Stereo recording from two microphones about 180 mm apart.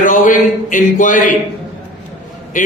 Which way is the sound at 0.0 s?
45° left (ahead or behind).